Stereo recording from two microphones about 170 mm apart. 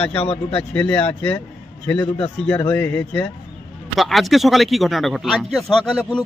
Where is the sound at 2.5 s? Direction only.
10° left (ahead or behind).